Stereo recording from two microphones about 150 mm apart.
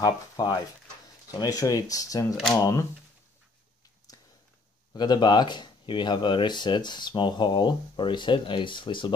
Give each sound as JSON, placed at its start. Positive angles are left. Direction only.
{"t": 0.0, "sound": "speech", "side_deg": 25}
{"t": 4.9, "sound": "speech", "side_deg": 30}